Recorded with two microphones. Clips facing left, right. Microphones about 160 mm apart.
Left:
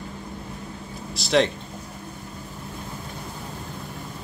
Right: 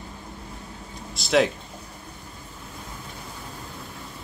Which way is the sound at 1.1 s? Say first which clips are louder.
Even; centre (ahead or behind).